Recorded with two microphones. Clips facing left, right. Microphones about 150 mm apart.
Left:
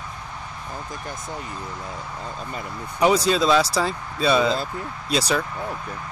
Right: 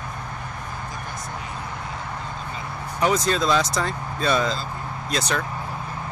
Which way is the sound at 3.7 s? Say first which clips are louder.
Left 2 dB; 5° left (ahead or behind).